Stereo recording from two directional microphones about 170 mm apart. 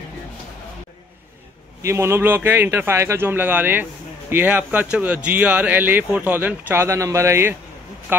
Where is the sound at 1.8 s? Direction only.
15° right (ahead or behind).